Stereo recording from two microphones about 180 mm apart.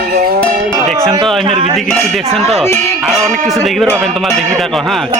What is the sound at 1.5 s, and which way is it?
Speech, 35° right (ahead or behind).